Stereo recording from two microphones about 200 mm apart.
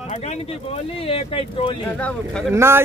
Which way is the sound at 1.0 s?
25° left (ahead or behind).